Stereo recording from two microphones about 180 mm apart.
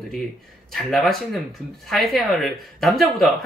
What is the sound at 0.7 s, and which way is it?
Speech, centre (ahead or behind).